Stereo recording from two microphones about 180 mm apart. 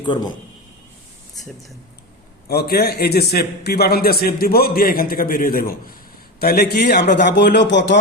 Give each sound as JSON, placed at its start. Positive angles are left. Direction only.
{"t": 0.0, "sound": "speech", "side_deg": 25}
{"t": 2.5, "sound": "a man's voice", "side_deg": 60}